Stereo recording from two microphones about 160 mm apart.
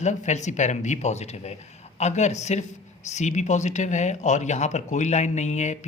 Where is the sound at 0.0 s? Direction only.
50° left (ahead or behind).